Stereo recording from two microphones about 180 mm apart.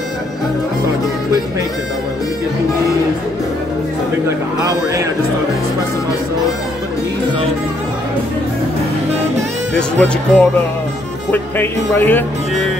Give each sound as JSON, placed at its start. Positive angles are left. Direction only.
{"t": 4.6, "sound": "a man's voice", "side_deg": -20}
{"t": 9.8, "sound": "speech", "side_deg": 5}